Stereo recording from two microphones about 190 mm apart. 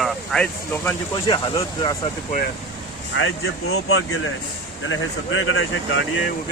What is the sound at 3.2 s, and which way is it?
Speech, 90° left.